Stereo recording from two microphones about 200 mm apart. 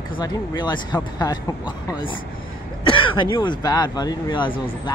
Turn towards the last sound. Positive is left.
turn(degrees=25)  # may be behind; listen again after turning